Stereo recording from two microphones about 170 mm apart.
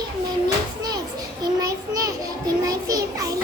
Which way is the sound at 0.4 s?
25° right (ahead or behind).